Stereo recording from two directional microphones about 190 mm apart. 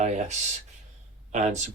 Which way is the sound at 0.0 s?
40° right (ahead or behind).